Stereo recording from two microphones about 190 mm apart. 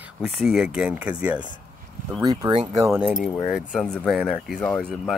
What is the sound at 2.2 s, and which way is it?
Speech, 20° right (ahead or behind).